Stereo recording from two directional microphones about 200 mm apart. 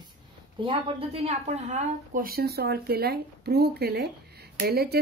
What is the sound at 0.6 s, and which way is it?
A woman's voice, 25° right (ahead or behind).